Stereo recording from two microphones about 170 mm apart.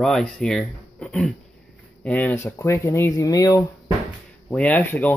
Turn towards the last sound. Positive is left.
turn(degrees=10)  # may be behind; listen again after turning